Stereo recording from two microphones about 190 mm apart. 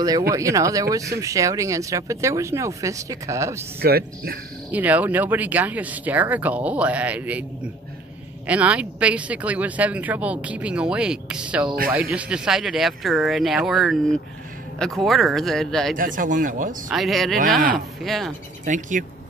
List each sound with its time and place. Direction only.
0.3 s speech: 15° right (ahead or behind)
3.8 s speech: 55° right (ahead or behind)
4.6 s speech: 10° right (ahead or behind)
16.0 s speech: 45° right (ahead or behind)
16.9 s speech: centre (ahead or behind)
18.7 s speech: 40° right (ahead or behind)